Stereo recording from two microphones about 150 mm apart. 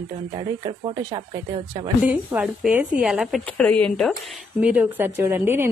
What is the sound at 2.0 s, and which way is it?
A woman's voice, 10° right (ahead or behind).